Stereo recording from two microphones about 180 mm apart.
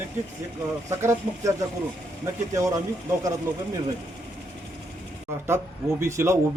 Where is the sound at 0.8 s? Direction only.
15° right (ahead or behind).